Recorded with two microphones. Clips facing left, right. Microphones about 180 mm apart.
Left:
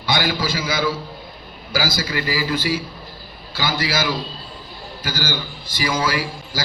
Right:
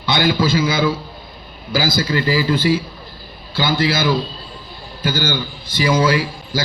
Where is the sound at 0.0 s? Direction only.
55° right (ahead or behind).